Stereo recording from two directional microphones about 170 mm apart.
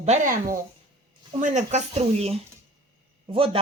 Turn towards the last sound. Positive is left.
turn(degrees=-30)  # may be behind; listen again after turning